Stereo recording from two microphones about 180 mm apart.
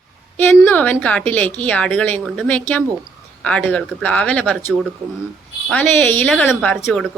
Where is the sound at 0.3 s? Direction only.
10° left (ahead or behind).